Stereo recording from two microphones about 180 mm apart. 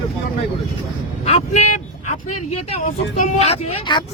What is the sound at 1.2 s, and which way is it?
Speech, 35° left (ahead or behind).